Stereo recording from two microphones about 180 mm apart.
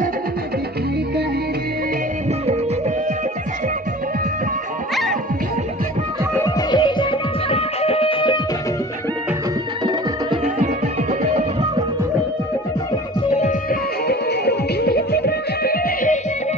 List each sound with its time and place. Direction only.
6.7 s music: 25° left (ahead or behind)
10.6 s music: 40° right (ahead or behind)
13.4 s music: 50° left (ahead or behind)